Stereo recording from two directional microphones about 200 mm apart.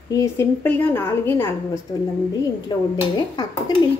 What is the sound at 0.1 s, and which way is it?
A woman's voice, 15° left (ahead or behind).